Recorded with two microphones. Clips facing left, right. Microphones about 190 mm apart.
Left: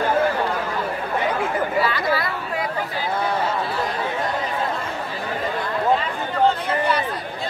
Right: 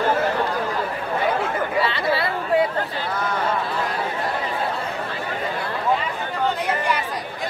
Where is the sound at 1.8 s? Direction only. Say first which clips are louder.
Right 1 dB; 30° right (ahead or behind).